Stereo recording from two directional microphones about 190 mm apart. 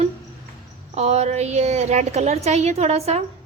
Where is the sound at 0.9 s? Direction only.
35° right (ahead or behind).